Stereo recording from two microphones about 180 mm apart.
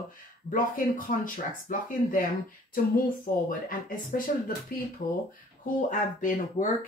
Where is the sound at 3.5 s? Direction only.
50° left (ahead or behind).